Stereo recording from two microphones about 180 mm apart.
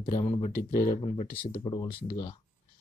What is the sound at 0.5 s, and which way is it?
Speech, 55° left (ahead or behind).